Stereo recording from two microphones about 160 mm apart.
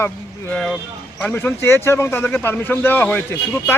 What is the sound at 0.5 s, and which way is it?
Speech, centre (ahead or behind).